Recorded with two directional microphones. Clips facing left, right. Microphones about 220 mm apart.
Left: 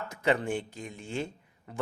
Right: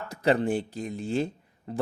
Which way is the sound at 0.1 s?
35° right (ahead or behind).